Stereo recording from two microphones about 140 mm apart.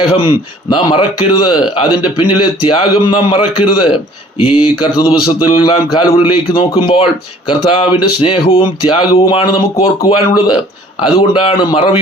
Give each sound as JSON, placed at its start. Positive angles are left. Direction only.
{"t": 0.1, "sound": "a man's voice", "side_deg": 35}